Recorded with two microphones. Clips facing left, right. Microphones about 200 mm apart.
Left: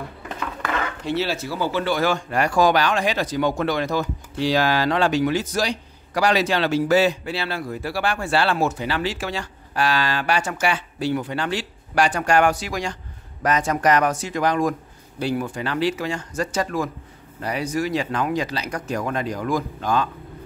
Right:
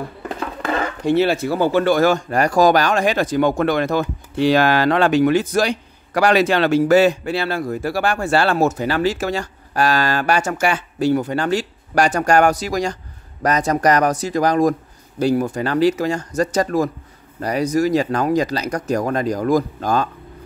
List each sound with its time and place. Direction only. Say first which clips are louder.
0.4 s dishes: right 4 dB; 35° right (ahead or behind)
1.0 s a man's voice: right 10 dB; 55° right (ahead or behind)